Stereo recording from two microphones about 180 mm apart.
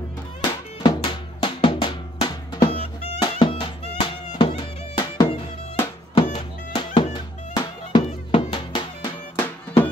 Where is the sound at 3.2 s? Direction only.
25° left (ahead or behind).